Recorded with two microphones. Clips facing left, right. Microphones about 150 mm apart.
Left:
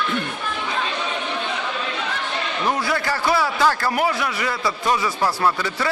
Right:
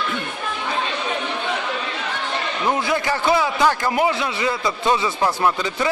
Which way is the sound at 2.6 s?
20° right (ahead or behind).